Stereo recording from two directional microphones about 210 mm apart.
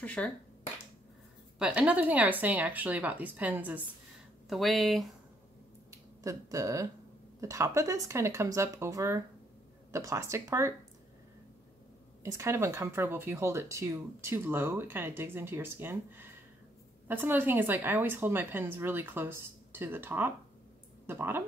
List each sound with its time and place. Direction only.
0.0 s speech: 5° left (ahead or behind)
1.6 s speech: 5° right (ahead or behind)
5.9 s speech: 15° right (ahead or behind)
12.2 s speech: 15° right (ahead or behind)